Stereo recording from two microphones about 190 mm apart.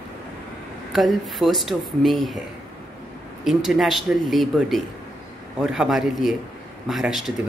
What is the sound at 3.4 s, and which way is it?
Speech, centre (ahead or behind).